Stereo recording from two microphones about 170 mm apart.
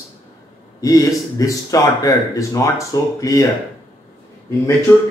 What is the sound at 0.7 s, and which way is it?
Speech, 20° left (ahead or behind).